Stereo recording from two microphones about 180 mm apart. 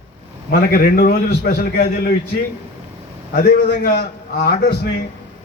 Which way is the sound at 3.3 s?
55° left (ahead or behind).